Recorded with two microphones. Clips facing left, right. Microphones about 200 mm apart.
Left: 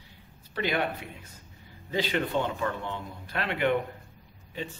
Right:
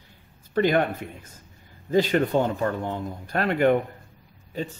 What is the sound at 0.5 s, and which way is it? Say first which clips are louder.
Speech: right 8 dB; 50° right (ahead or behind).